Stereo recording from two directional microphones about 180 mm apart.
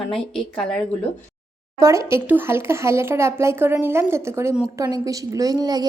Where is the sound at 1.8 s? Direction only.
15° right (ahead or behind).